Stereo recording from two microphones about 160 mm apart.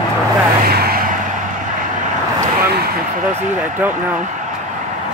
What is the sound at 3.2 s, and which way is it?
Speech, 50° right (ahead or behind).